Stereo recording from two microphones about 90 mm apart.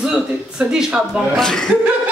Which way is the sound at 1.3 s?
5° left (ahead or behind).